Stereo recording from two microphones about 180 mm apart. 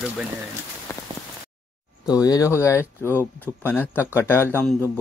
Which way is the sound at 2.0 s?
20° left (ahead or behind).